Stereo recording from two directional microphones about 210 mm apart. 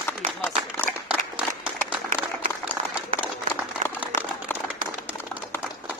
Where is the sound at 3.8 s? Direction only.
35° right (ahead or behind).